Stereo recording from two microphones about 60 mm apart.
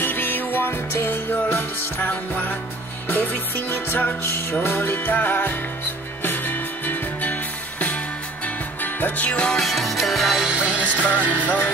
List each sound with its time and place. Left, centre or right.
0.0 s music: left
8.8 s music: left
9.6 s music: centre; by 11.7 s right